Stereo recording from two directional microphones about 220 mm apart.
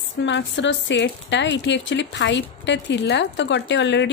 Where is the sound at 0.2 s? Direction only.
55° left (ahead or behind).